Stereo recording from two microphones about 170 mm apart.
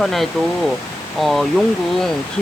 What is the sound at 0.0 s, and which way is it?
Speech, centre (ahead or behind).